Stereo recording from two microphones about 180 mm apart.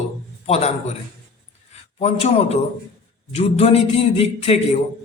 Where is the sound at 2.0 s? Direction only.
35° left (ahead or behind).